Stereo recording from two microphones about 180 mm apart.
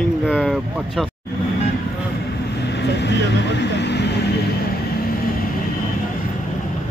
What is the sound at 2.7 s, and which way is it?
Vehicle, 70° left (ahead or behind).